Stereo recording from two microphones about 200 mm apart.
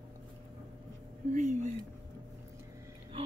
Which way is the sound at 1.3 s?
40° right (ahead or behind).